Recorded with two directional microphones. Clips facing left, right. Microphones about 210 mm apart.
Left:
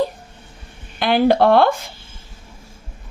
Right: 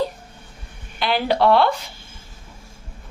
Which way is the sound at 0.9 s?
50° left (ahead or behind).